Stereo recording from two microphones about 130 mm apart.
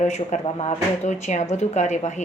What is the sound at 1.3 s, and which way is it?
Speech, 65° left (ahead or behind).